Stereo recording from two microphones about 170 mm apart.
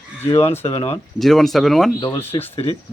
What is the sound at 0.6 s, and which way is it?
Speech, 35° left (ahead or behind).